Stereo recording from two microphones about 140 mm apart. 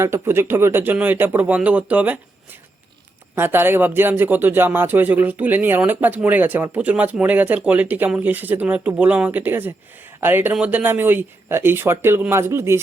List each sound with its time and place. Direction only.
0.0 s speech: 20° right (ahead or behind)